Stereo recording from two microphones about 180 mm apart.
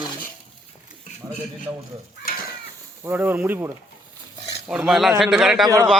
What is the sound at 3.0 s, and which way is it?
A man's voice, 10° right (ahead or behind).